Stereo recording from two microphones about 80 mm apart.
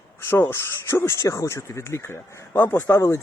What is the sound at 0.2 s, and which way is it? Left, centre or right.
Speech, left.